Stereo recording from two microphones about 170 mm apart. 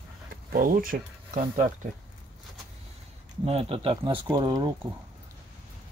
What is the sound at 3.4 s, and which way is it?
Speech, 35° right (ahead or behind).